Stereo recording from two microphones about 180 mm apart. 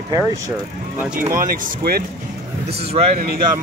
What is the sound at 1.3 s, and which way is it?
Speech, 55° right (ahead or behind).